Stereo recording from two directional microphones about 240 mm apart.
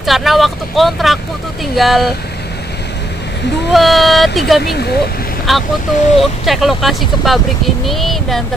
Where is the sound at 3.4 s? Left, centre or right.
Left.